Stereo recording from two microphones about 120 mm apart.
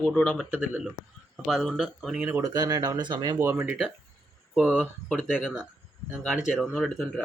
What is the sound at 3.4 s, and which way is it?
Speech, 15° right (ahead or behind).